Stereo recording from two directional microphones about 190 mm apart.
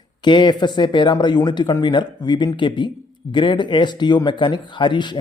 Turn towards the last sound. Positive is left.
turn(degrees=25)  # may be behind; listen again after turning